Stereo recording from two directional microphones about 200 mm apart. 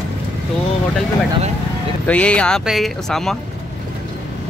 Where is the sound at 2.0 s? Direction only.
5° left (ahead or behind).